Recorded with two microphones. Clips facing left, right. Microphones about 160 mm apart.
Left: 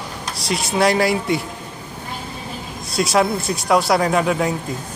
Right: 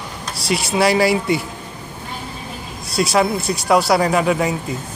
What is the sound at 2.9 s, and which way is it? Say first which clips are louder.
Speech: right 1 dB; centre (ahead or behind).